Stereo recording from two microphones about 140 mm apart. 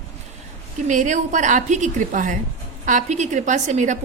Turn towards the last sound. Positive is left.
turn(degrees=-60)  # may be behind; listen again after turning